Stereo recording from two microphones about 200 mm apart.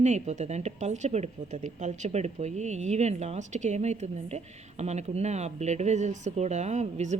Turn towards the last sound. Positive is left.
turn(degrees=-35)  # may be behind; listen again after turning